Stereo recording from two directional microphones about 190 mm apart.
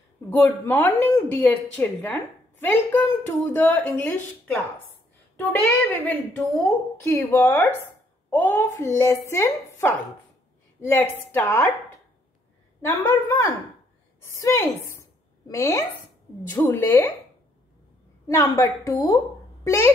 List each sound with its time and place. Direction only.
0.3 s a woman's voice: 10° left (ahead or behind)
12.8 s a woman's voice: 10° left (ahead or behind)
18.2 s a woman's voice: 15° left (ahead or behind)